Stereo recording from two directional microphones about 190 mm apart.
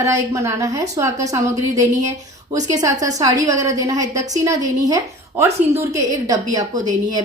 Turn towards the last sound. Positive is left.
turn(degrees=-20)  # may be behind; listen again after turning